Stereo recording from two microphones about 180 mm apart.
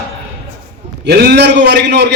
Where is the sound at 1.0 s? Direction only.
65° right (ahead or behind).